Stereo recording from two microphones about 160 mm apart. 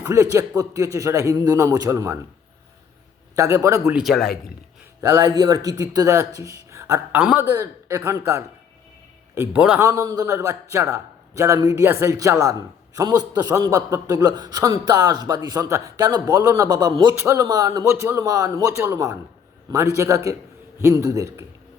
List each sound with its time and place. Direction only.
0.0 s a man's voice: 15° right (ahead or behind)
3.3 s a man's voice: 20° right (ahead or behind)
3.9 s a man's voice: centre (ahead or behind)
4.9 s a man's voice: 20° right (ahead or behind)
7.1 s a man's voice: 10° right (ahead or behind)
9.6 s speech: 5° right (ahead or behind)
9.8 s a man's voice: 20° right (ahead or behind)